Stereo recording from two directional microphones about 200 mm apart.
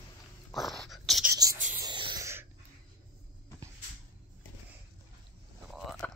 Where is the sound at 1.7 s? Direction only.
25° right (ahead or behind).